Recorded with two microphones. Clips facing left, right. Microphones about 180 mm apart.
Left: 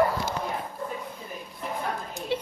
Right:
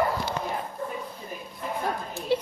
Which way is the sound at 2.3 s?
35° right (ahead or behind).